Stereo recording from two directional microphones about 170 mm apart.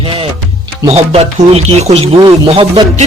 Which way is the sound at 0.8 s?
35° right (ahead or behind).